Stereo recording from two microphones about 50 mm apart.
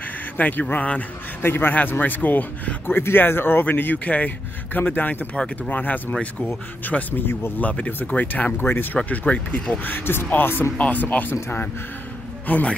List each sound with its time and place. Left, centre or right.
0.4 s speech: left
1.4 s speech: left
2.9 s speech: left
7.2 s speech: left
7.6 s speech: left
8.5 s speech: left
8.9 s speech: left
9.8 s speech: left
10.8 s speech: left
12.5 s speech: left